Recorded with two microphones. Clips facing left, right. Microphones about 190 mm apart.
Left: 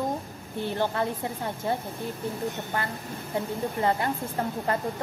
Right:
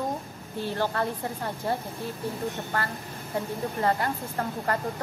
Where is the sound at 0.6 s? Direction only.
15° left (ahead or behind).